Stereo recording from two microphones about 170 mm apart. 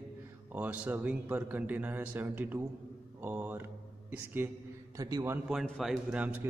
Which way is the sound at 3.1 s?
10° right (ahead or behind).